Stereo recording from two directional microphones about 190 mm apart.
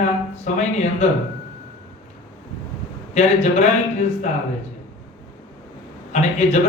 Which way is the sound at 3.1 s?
35° left (ahead or behind).